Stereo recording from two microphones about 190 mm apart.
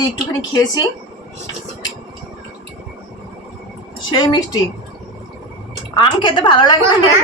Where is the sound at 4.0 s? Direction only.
20° left (ahead or behind).